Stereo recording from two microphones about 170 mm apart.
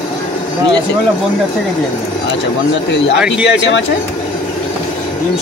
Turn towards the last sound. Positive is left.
turn(degrees=90)